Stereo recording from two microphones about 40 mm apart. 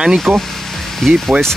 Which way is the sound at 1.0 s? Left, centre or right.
Centre.